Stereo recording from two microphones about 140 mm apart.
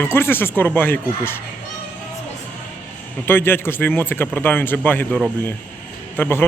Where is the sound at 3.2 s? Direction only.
15° left (ahead or behind).